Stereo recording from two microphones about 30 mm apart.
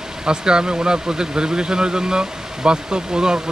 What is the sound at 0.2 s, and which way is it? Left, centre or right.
Speech, right.